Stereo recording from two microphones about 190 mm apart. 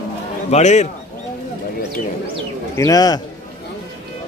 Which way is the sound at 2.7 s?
20° left (ahead or behind).